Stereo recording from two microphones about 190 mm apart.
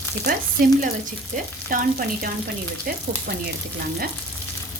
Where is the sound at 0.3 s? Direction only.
45° right (ahead or behind).